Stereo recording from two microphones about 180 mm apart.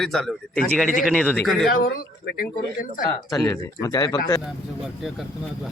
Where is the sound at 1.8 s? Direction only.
55° left (ahead or behind).